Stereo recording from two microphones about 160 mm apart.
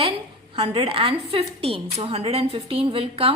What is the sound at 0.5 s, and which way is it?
A woman's voice, 35° right (ahead or behind).